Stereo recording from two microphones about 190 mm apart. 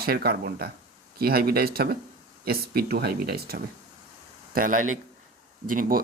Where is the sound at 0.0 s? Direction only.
55° right (ahead or behind).